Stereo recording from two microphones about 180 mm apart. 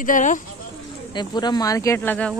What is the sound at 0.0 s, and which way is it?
Speech, 45° left (ahead or behind).